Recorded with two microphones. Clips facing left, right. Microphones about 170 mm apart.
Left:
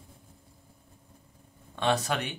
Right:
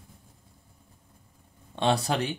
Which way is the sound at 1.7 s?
30° right (ahead or behind).